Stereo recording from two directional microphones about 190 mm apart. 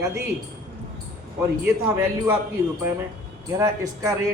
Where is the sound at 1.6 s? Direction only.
10° right (ahead or behind).